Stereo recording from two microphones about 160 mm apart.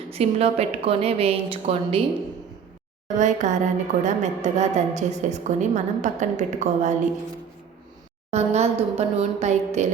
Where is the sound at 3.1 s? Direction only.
50° right (ahead or behind).